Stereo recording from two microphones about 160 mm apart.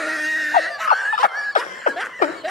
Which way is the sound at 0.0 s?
Centre (ahead or behind).